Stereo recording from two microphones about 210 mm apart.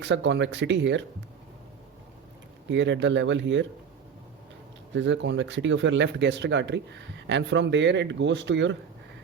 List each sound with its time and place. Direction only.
0.0 s speech: 60° right (ahead or behind)
2.6 s speech: 60° right (ahead or behind)
4.9 s speech: 60° right (ahead or behind)